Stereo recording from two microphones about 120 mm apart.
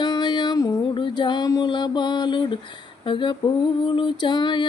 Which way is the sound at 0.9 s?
40° left (ahead or behind).